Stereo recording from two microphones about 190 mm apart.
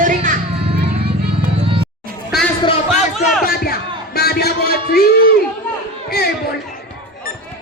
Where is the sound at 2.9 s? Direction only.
Centre (ahead or behind).